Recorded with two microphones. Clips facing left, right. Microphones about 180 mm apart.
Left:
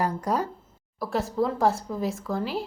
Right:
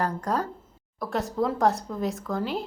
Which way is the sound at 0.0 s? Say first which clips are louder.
Left 1 dB; 10° left (ahead or behind).